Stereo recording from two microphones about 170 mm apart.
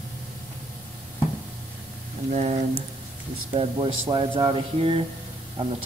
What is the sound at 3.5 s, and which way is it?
Speech, 30° right (ahead or behind).